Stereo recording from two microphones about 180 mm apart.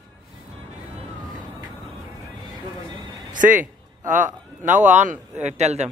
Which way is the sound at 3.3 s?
45° right (ahead or behind).